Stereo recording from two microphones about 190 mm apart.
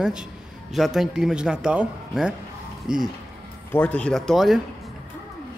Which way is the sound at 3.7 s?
10° left (ahead or behind).